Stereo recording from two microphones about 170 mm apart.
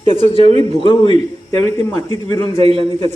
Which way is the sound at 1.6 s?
20° left (ahead or behind).